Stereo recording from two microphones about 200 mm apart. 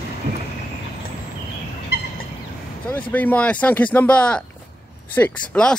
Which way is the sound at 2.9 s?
10° left (ahead or behind).